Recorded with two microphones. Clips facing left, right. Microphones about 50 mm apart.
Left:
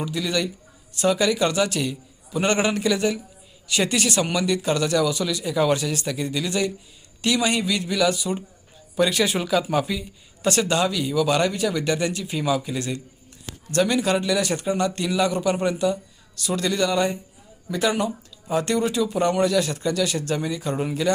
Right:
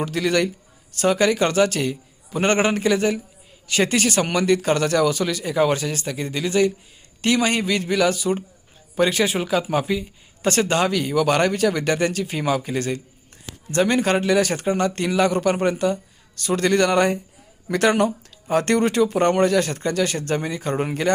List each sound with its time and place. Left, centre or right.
0.0 s speech: right
0.9 s a man's voice: right